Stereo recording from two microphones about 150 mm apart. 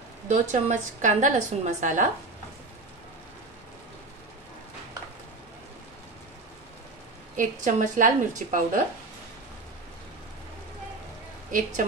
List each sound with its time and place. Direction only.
0.3 s a woman's voice: 55° right (ahead or behind)
7.3 s a woman's voice: 60° right (ahead or behind)
11.5 s a woman's voice: 60° right (ahead or behind)